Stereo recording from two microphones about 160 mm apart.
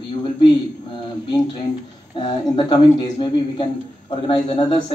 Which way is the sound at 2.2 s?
25° left (ahead or behind).